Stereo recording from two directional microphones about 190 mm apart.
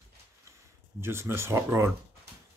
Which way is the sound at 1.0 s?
15° right (ahead or behind).